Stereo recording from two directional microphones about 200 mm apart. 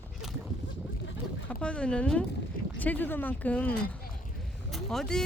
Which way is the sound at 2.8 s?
10° left (ahead or behind).